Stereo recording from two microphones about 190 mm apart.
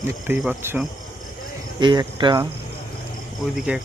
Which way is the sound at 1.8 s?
25° right (ahead or behind).